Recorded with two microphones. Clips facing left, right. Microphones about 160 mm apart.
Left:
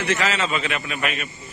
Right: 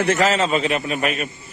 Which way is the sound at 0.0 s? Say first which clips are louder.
Right 5 dB; 45° right (ahead or behind).